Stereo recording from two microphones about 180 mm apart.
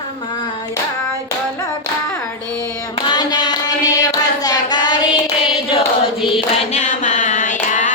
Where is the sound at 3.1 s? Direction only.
25° left (ahead or behind).